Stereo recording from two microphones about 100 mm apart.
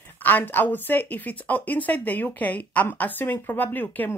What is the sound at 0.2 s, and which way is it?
Speech, 20° left (ahead or behind).